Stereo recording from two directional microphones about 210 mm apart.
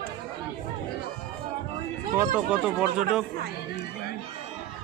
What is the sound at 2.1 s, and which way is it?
Speech, 10° right (ahead or behind).